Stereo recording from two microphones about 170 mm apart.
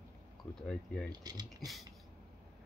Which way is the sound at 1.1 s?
25° right (ahead or behind).